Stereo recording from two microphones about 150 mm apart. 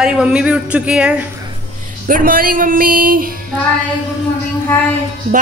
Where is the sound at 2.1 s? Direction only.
70° right (ahead or behind).